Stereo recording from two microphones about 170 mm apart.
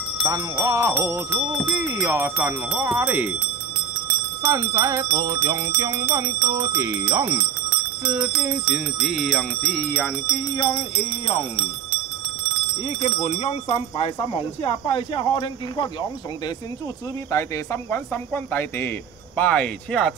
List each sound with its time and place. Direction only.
0.2 s music: 20° right (ahead or behind)
4.4 s music: 15° right (ahead or behind); by 12.0 s 35° left (ahead or behind)
12.8 s speech: 35° left (ahead or behind)
17.3 s music: 15° left (ahead or behind)